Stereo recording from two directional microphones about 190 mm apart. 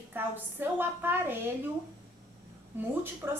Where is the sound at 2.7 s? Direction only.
10° right (ahead or behind).